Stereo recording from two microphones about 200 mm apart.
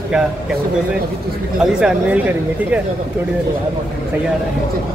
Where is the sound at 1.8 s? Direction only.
5° right (ahead or behind).